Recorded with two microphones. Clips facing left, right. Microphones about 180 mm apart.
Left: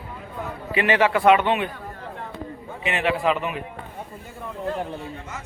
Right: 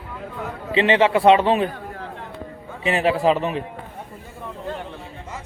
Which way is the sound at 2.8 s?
35° right (ahead or behind).